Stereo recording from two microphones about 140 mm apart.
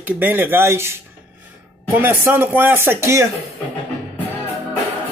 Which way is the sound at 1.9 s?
15° right (ahead or behind).